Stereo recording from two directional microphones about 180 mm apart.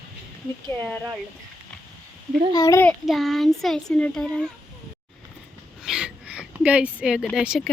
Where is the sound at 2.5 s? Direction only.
20° left (ahead or behind).